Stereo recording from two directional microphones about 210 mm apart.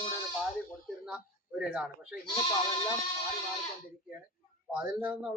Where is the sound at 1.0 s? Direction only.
5° right (ahead or behind).